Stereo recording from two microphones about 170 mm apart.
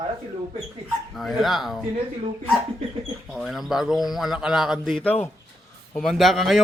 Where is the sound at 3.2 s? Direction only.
Centre (ahead or behind).